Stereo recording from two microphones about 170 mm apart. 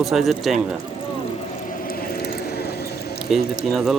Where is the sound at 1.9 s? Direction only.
65° left (ahead or behind).